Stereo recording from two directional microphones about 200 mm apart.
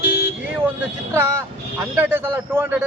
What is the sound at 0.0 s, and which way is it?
Vehicle, 50° left (ahead or behind).